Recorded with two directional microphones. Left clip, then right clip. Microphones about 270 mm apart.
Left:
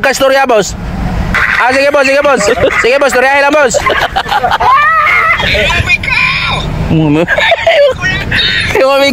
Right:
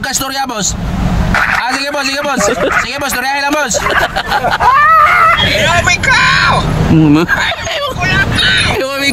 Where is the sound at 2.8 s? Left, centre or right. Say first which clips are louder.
Left 9 dB; centre.